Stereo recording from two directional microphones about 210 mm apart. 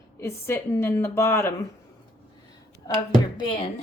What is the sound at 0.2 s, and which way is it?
Speech, 10° left (ahead or behind).